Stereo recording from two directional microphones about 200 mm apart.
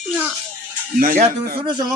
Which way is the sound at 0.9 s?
45° right (ahead or behind).